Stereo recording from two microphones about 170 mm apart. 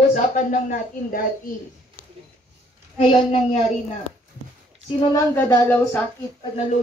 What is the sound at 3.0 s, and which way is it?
Child singing, 35° left (ahead or behind).